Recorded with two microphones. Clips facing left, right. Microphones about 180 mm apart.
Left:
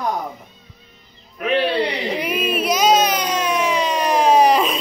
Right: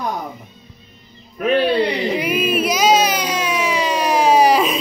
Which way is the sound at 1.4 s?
45° right (ahead or behind).